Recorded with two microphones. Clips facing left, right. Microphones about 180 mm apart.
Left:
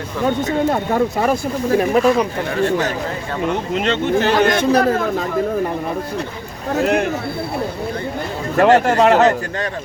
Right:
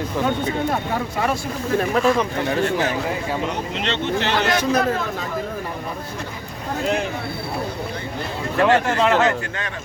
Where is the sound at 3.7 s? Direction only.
45° left (ahead or behind).